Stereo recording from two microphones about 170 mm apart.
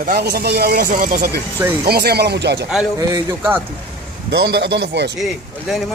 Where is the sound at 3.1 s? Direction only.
15° right (ahead or behind).